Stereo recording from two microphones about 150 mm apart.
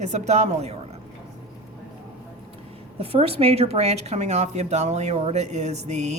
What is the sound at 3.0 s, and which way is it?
A woman's voice, 40° right (ahead or behind).